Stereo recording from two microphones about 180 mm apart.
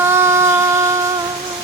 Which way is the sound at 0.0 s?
15° right (ahead or behind).